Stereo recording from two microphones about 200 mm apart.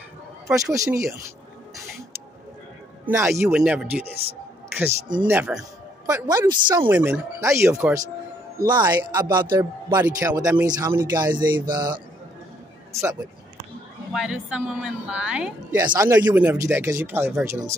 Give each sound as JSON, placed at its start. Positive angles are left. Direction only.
{"t": 0.5, "sound": "a woman's voice", "side_deg": -15}
{"t": 3.1, "sound": "a woman's voice", "side_deg": -10}
{"t": 5.2, "sound": "a woman's voice", "side_deg": -10}
{"t": 6.9, "sound": "a woman's voice", "side_deg": -10}
{"t": 8.5, "sound": "a man's voice", "side_deg": -20}
{"t": 14.1, "sound": "a woman's voice", "side_deg": -5}